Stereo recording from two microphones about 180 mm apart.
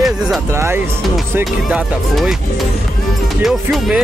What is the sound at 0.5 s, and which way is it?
Speech, 15° right (ahead or behind).